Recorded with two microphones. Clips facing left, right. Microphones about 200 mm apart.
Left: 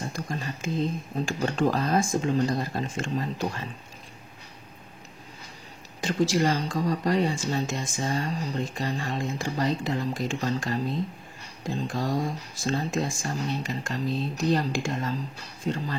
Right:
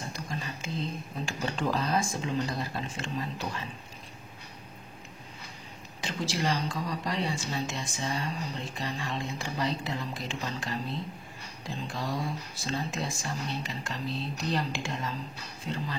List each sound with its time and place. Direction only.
0.1 s speech: 50° left (ahead or behind)
5.9 s speech: 45° left (ahead or behind)